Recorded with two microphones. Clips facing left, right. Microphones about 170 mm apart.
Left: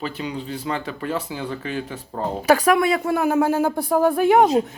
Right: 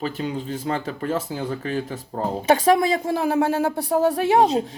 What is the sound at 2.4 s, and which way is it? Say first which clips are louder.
A woman's voice: left 1 dB; 25° right (ahead or behind).